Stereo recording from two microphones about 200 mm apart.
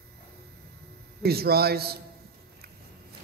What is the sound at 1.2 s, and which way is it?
Speech, 50° right (ahead or behind).